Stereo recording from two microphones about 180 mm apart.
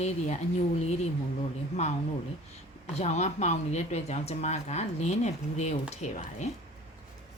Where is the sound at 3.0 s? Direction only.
40° left (ahead or behind).